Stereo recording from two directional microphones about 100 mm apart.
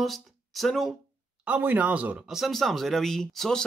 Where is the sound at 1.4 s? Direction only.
15° right (ahead or behind).